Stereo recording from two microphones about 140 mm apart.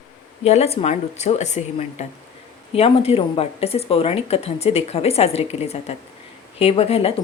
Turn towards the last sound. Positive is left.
turn(degrees=45)  # may be behind; listen again after turning